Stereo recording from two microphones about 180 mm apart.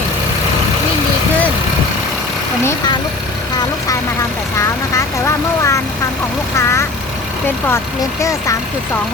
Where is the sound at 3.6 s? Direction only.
20° left (ahead or behind).